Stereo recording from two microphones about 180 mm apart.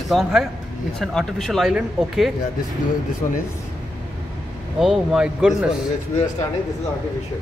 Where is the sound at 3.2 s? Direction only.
40° left (ahead or behind).